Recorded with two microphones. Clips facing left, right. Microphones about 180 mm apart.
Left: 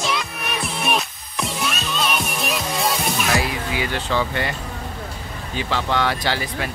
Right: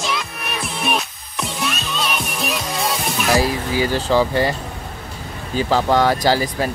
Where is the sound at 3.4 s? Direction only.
35° right (ahead or behind).